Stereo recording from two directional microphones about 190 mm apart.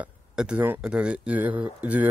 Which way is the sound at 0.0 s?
5° right (ahead or behind).